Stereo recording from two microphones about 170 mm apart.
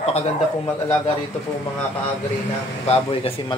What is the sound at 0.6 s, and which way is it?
Speech, 20° left (ahead or behind).